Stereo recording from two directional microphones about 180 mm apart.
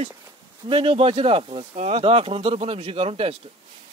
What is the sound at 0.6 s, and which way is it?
Speech, 30° right (ahead or behind).